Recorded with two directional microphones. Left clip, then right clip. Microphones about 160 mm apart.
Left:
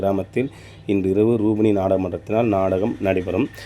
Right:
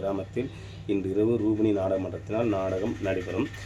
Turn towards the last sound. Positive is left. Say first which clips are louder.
# left 8 dB
turn(degrees=30)  # may be behind; listen again after turning